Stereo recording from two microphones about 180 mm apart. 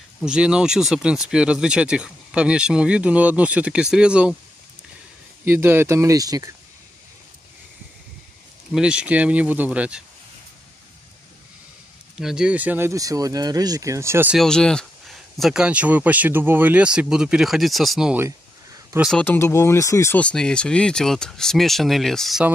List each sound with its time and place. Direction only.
0.2 s speech: 5° right (ahead or behind)
5.4 s speech: 10° right (ahead or behind)
8.7 s speech: 5° right (ahead or behind)
12.2 s speech: 5° right (ahead or behind)
14.4 s speech: 5° left (ahead or behind); by 18.9 s 15° right (ahead or behind)
18.9 s speech: centre (ahead or behind)
19.2 s speech: 15° left (ahead or behind)